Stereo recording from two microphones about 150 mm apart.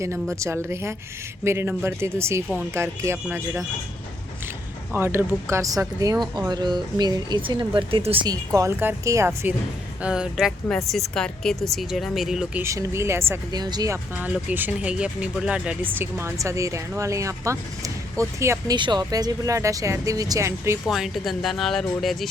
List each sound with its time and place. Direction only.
0.0 s speech: 20° right (ahead or behind)
4.9 s speech: 15° right (ahead or behind); by 8.3 s 35° right (ahead or behind)
8.3 s speech: 20° right (ahead or behind); by 12.6 s 5° right (ahead or behind)
12.6 s speech: 20° right (ahead or behind)
18.8 s speech: 30° right (ahead or behind)
20.8 s speech: centre (ahead or behind)